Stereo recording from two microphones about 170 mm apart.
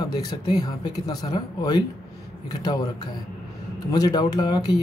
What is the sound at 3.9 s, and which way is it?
Speech, 20° left (ahead or behind).